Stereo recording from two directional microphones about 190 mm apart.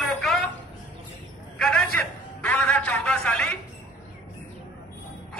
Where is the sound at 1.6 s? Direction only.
5° left (ahead or behind).